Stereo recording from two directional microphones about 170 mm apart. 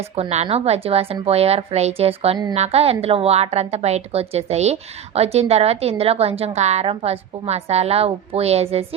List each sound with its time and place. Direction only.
0.0 s a woman's voice: 40° right (ahead or behind)